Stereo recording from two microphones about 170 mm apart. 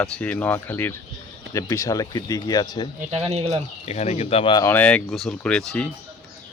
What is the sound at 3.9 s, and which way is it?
Speech, 40° left (ahead or behind).